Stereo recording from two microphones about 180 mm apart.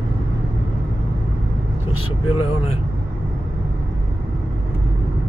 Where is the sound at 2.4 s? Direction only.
30° left (ahead or behind).